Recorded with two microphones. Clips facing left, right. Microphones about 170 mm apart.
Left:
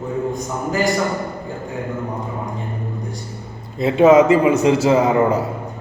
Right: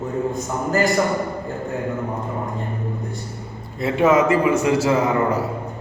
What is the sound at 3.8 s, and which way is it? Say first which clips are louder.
A man's voice: left 5 dB; 20° left (ahead or behind).